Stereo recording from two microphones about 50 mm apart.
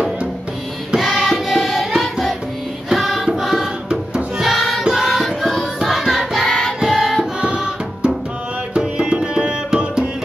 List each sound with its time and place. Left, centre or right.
0.9 s music: centre
6.8 s music: centre